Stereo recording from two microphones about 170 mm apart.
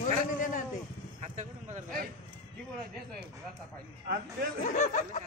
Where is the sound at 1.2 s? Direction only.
45° right (ahead or behind).